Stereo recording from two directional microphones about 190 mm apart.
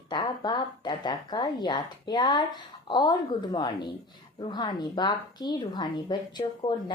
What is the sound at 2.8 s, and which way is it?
A woman's voice, 25° left (ahead or behind).